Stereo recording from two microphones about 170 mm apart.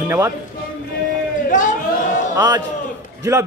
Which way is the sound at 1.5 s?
50° left (ahead or behind).